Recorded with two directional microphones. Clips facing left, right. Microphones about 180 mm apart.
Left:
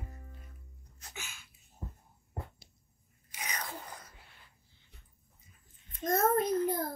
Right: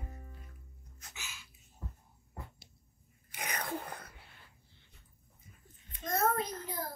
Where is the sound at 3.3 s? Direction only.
55° right (ahead or behind).